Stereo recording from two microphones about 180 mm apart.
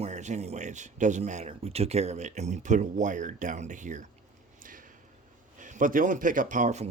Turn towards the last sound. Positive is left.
turn(degrees=-40)  # may be behind; listen again after turning